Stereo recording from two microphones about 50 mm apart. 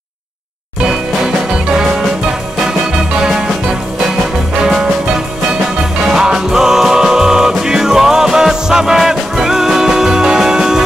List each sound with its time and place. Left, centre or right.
0.8 s music: centre
6.1 s music: centre